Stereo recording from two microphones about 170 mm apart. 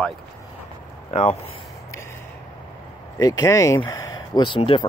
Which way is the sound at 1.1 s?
40° left (ahead or behind).